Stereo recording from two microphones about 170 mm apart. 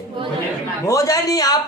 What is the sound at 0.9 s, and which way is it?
Speech, 20° left (ahead or behind).